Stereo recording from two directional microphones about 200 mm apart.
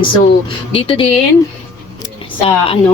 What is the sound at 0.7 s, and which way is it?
Speech, 30° left (ahead or behind).